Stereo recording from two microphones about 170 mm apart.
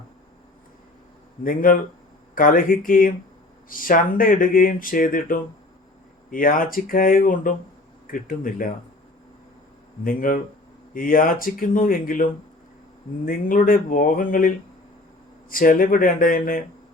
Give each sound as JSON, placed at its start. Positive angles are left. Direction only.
{"t": 1.5, "sound": "speech", "side_deg": 55}
{"t": 10.0, "sound": "speech", "side_deg": 55}